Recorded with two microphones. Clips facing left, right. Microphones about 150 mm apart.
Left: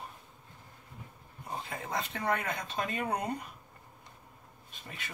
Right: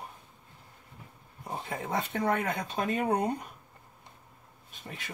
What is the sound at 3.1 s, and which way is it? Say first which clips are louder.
Speech: right 7 dB; 35° right (ahead or behind).